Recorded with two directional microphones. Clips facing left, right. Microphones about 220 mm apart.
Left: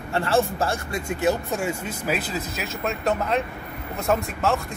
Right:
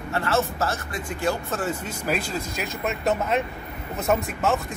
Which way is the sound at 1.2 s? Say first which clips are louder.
Left 3 dB; 15° left (ahead or behind).